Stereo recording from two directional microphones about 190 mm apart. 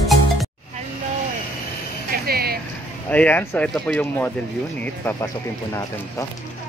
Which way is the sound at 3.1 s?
10° left (ahead or behind).